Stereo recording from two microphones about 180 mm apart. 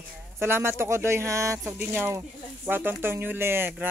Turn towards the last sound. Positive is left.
turn(degrees=-10)  # may be behind; listen again after turning